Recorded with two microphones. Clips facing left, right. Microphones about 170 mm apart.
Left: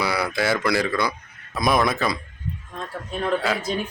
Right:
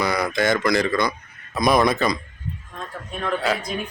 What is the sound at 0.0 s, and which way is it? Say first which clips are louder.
Speech: right 2 dB; 5° left (ahead or behind).